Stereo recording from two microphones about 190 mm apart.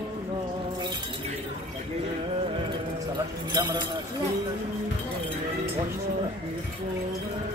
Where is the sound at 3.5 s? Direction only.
20° right (ahead or behind).